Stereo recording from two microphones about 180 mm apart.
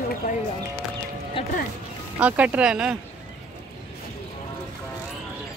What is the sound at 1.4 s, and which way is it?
Speech, 30° left (ahead or behind).